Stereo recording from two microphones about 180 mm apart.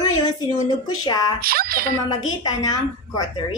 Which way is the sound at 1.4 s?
55° right (ahead or behind).